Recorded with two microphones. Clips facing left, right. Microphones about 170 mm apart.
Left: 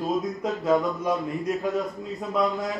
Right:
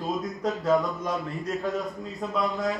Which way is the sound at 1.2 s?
20° left (ahead or behind).